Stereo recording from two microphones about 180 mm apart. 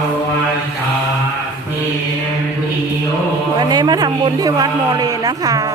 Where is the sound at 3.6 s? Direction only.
20° right (ahead or behind).